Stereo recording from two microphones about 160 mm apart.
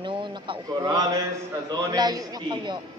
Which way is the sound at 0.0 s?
30° right (ahead or behind).